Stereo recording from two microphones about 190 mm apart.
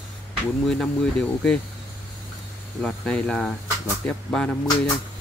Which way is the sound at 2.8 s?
5° left (ahead or behind).